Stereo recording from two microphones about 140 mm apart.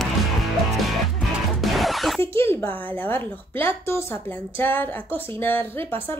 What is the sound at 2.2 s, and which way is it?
A woman's voice, 15° left (ahead or behind).